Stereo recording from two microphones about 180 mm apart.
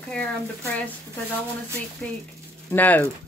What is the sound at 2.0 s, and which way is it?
Speech, 10° left (ahead or behind).